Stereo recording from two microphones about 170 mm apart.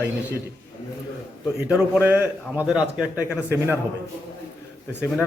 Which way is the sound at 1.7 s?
10° right (ahead or behind).